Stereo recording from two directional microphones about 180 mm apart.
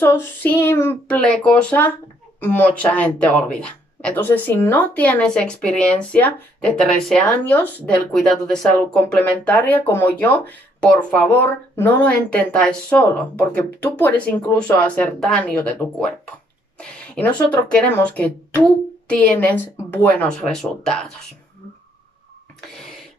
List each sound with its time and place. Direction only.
0.0 s speech: 10° left (ahead or behind)